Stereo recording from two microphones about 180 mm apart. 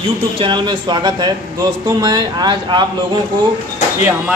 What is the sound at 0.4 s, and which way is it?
Speech, 25° right (ahead or behind).